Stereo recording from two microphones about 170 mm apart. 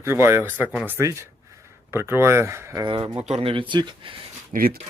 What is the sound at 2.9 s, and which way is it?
Speech, 30° right (ahead or behind).